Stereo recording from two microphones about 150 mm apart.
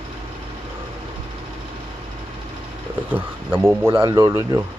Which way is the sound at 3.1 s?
15° right (ahead or behind).